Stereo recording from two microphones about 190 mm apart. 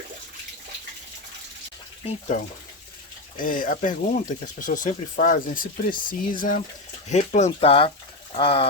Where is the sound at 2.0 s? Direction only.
40° left (ahead or behind).